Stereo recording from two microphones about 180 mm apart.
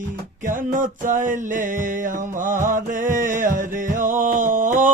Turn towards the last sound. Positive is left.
turn(degrees=-45)  # may be behind; listen again after turning